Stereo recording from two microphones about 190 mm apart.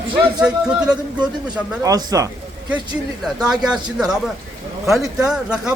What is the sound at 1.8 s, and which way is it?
Speech, 20° right (ahead or behind).